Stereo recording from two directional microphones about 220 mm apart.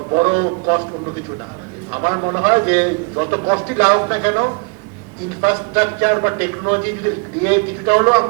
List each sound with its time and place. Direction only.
0.1 s a man's voice: 25° right (ahead or behind)
1.9 s a man's voice: 20° right (ahead or behind)